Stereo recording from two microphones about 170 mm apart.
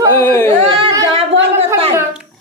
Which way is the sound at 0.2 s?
15° left (ahead or behind).